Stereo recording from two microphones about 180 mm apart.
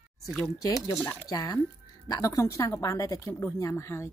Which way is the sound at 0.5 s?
20° left (ahead or behind).